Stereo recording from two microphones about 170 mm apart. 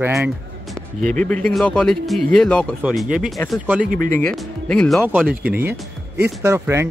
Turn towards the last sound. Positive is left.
turn(degrees=-15)  # may be behind; listen again after turning